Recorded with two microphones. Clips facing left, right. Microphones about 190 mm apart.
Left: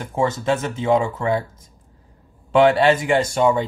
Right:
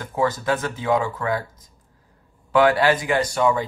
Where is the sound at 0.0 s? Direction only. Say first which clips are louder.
Left 1 dB; 25° left (ahead or behind).